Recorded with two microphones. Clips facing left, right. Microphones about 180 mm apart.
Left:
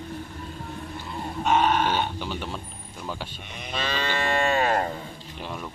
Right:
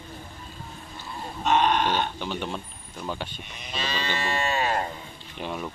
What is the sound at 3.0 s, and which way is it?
Speech, 5° left (ahead or behind).